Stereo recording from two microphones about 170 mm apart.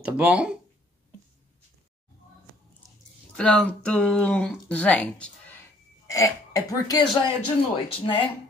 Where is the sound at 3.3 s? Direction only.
5° left (ahead or behind).